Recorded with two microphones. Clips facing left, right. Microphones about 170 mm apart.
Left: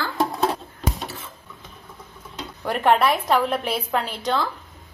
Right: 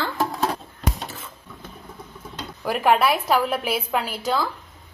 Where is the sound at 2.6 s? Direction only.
5° right (ahead or behind).